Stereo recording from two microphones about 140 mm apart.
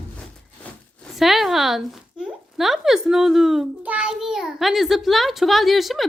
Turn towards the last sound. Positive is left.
turn(degrees=0)  # may be behind; listen again after turning